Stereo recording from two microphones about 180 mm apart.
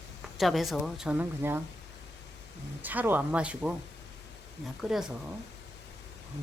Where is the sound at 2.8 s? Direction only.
10° right (ahead or behind).